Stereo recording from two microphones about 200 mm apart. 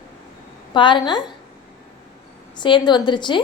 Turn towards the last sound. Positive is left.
turn(degrees=25)  # may be behind; listen again after turning